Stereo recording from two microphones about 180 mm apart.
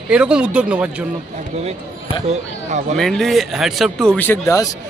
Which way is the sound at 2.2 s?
40° right (ahead or behind).